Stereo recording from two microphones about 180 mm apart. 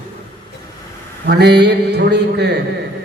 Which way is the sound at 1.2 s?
70° right (ahead or behind).